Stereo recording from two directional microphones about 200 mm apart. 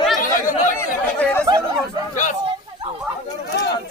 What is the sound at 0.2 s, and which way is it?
Chatter, 40° left (ahead or behind).